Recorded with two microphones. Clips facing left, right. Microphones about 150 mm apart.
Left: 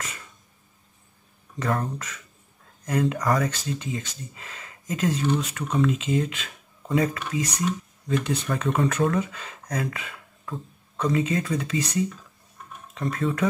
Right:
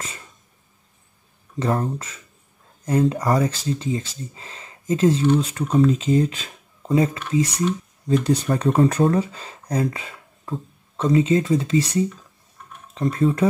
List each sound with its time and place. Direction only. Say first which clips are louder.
1.6 s speech: right 4 dB; 30° right (ahead or behind)